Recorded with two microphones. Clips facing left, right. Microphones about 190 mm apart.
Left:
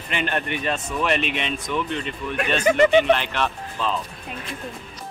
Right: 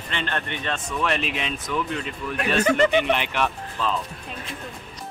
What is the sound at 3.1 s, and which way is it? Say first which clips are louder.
Speech: left 3 dB; 10° right (ahead or behind).